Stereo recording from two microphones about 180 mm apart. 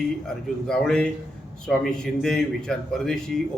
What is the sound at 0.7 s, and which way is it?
A man's voice, 5° left (ahead or behind).